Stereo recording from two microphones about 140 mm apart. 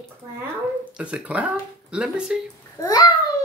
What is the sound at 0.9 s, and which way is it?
Speech, 10° right (ahead or behind).